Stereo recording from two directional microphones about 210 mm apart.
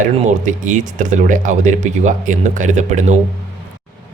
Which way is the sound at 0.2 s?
35° right (ahead or behind).